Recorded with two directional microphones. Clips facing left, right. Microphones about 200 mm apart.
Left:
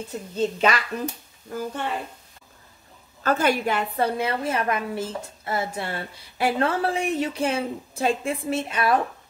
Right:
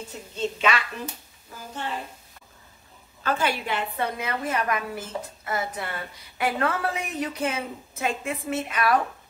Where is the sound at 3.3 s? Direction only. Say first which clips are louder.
Left 4 dB; 45° left (ahead or behind); by 8.9 s 30° left (ahead or behind).